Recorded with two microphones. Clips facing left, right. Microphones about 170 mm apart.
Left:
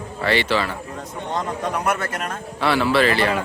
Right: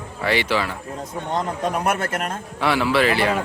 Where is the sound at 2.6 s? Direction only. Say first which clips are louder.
Left 1 dB; 15° right (ahead or behind).